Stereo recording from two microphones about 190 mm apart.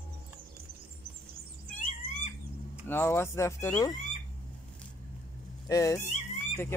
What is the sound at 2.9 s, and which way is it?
Speech, 10° left (ahead or behind).